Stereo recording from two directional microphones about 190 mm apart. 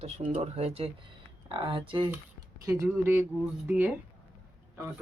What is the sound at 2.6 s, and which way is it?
Speech, 15° right (ahead or behind).